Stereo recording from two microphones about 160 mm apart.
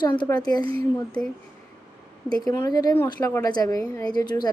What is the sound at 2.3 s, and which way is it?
A woman's voice, 25° left (ahead or behind).